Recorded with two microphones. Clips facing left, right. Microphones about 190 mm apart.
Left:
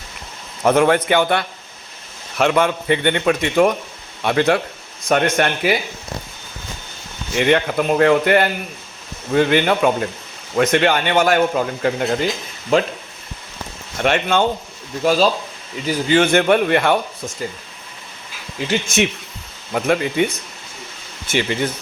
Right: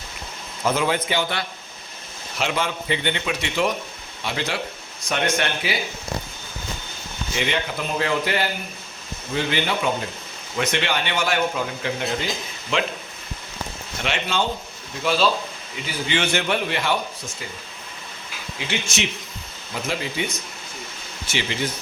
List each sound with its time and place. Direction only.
0.6 s a man's voice: 60° left (ahead or behind)
7.3 s a man's voice: 55° left (ahead or behind)
14.0 s a man's voice: 55° left (ahead or behind)
15.0 s a man's voice: 40° left (ahead or behind)
18.7 s a man's voice: 55° left (ahead or behind)